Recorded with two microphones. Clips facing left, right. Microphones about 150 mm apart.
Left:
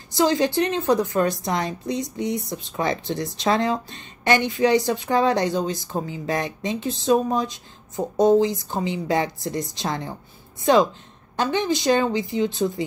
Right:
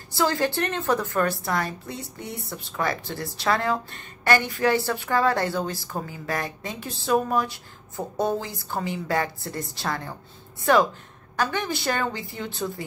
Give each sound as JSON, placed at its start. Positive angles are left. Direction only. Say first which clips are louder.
{"t": 0.1, "sound": "a woman's voice", "louder": "left 4 dB", "side_deg": 15}